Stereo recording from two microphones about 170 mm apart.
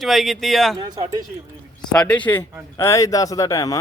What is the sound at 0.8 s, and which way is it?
Speech, 25° right (ahead or behind).